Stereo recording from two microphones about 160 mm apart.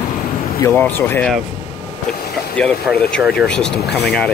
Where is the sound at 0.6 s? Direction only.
15° left (ahead or behind).